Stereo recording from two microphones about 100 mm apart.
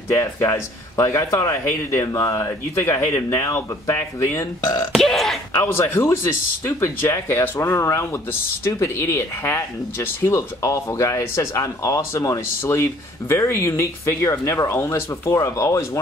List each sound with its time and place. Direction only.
0.1 s speech: 30° left (ahead or behind)
4.9 s throat clearing: centre (ahead or behind)
5.5 s speech: 25° left (ahead or behind)